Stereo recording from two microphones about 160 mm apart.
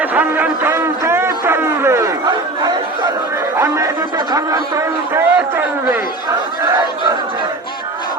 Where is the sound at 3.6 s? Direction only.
20° right (ahead or behind).